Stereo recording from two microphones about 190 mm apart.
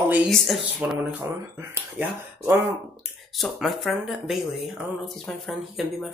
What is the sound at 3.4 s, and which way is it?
Speech, centre (ahead or behind).